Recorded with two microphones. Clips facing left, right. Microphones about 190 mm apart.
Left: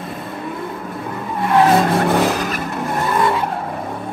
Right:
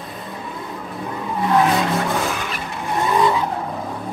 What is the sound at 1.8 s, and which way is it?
Vehicle, 60° left (ahead or behind).